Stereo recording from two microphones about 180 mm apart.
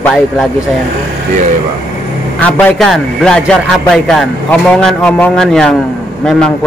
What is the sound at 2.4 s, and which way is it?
A man's voice, 5° left (ahead or behind).